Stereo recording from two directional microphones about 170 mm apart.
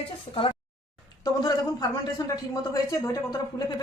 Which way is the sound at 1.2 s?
20° left (ahead or behind).